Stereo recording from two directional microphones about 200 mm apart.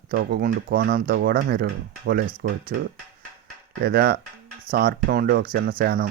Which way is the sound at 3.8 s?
50° right (ahead or behind).